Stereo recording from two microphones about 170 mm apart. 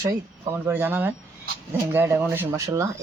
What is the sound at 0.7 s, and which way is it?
Speech, 10° right (ahead or behind).